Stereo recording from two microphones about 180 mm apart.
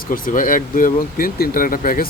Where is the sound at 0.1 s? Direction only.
50° left (ahead or behind).